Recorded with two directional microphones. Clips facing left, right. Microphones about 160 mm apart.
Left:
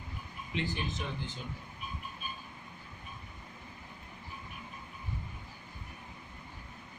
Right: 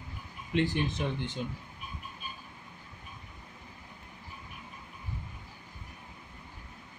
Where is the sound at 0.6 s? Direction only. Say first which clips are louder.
Right 7 dB; 70° right (ahead or behind).